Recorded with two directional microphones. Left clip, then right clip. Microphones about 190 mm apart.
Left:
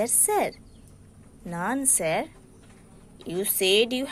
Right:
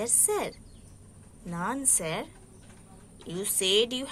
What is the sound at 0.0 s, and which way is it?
A woman's voice, 25° left (ahead or behind).